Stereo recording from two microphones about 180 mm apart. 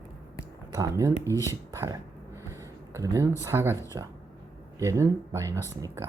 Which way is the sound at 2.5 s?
15° right (ahead or behind).